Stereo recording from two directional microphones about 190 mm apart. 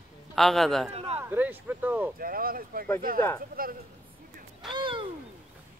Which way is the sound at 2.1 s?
50° right (ahead or behind).